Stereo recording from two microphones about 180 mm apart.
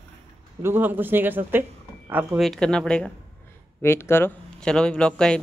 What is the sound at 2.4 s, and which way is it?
A man's voice, 5° left (ahead or behind).